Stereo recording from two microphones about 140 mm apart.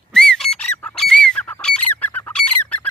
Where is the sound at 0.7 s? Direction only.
5° left (ahead or behind).